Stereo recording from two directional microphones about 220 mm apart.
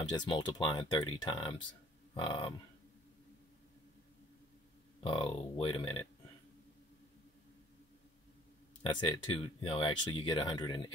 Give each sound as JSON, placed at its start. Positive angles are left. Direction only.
{"t": 0.1, "sound": "speech", "side_deg": 20}
{"t": 5.0, "sound": "speech", "side_deg": 25}
{"t": 8.8, "sound": "speech", "side_deg": 20}